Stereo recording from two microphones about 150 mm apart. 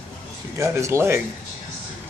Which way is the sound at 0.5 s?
20° right (ahead or behind).